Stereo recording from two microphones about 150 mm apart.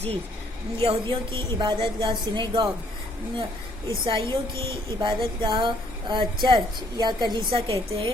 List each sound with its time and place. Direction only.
0.8 s speech: 35° right (ahead or behind)
4.0 s speech: 35° right (ahead or behind)